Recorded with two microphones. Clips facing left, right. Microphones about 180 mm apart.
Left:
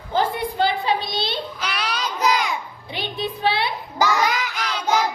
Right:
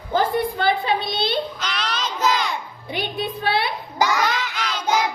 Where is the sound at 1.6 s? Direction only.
10° left (ahead or behind).